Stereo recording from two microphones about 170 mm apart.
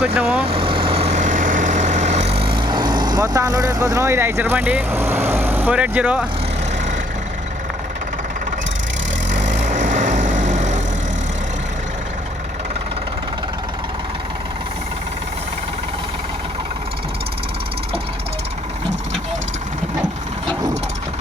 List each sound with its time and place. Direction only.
0.0 s speech: 5° right (ahead or behind)
0.4 s vehicle: 35° right (ahead or behind); by 6.2 s 5° right (ahead or behind)
9.5 s vehicle: 45° right (ahead or behind)